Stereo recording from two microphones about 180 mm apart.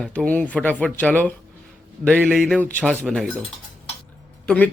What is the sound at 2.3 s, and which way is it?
Speech, 5° left (ahead or behind).